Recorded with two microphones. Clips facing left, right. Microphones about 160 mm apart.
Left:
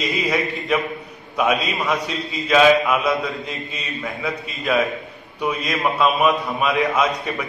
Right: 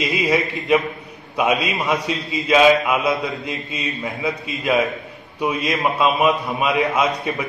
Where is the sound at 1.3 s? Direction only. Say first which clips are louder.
Right 1 dB; 15° right (ahead or behind).